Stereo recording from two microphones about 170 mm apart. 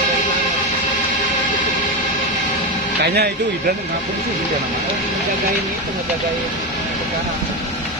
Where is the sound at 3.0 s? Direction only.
70° right (ahead or behind).